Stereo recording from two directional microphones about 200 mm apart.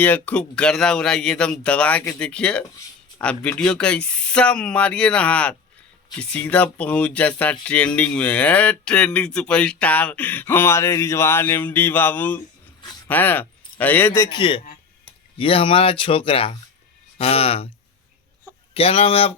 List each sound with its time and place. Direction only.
0.0 s speech: 5° left (ahead or behind)
14.3 s speech: 25° left (ahead or behind)
18.7 s speech: 30° left (ahead or behind)